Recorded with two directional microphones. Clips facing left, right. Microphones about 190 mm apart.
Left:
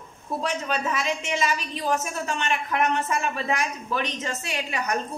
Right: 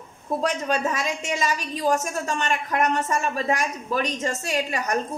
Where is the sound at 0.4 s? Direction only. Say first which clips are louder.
Right 3 dB; 45° right (ahead or behind).